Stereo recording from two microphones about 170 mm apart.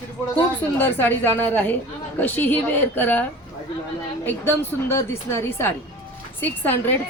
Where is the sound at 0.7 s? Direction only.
10° left (ahead or behind).